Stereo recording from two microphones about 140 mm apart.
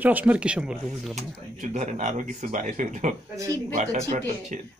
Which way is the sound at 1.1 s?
55° right (ahead or behind).